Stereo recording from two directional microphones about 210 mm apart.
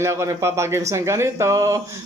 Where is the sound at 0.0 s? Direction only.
15° right (ahead or behind).